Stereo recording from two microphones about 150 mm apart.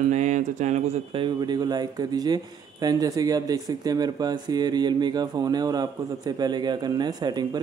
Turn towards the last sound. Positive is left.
turn(degrees=-30)  # may be behind; listen again after turning